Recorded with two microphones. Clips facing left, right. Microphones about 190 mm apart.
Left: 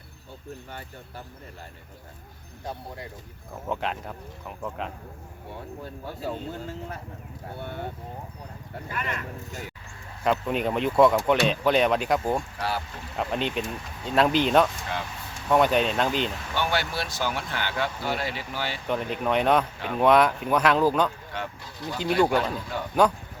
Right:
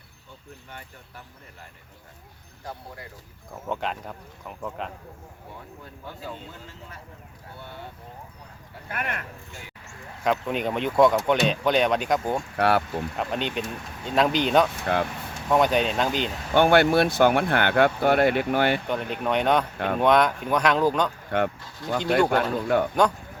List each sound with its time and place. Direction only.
0.7 s speech: 35° left (ahead or behind)
3.7 s speech: centre (ahead or behind)
5.8 s speech: 40° left (ahead or behind)
7.6 s speech: 55° left (ahead or behind)
8.9 s speech: 60° right (ahead or behind)
10.2 s speech: centre (ahead or behind)
12.5 s speech: 60° right (ahead or behind)
13.1 s speech: centre (ahead or behind)
16.6 s speech: 55° right (ahead or behind)
18.9 s speech: centre (ahead or behind)
19.7 s speech: 60° right (ahead or behind)
20.0 s speech: 5° left (ahead or behind)
21.2 s speech: 60° right (ahead or behind)